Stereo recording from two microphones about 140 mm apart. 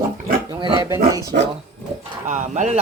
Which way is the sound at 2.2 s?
60° right (ahead or behind).